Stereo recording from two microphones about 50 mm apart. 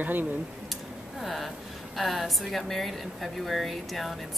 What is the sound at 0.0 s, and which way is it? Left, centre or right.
Speech, right.